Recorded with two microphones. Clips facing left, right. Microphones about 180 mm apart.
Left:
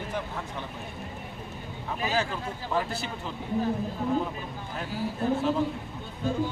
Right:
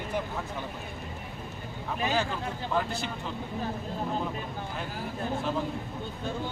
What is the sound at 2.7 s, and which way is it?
Speech, 5° left (ahead or behind).